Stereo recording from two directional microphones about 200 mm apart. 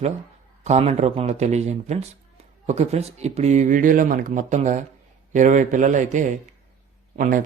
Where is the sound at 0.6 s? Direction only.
35° right (ahead or behind).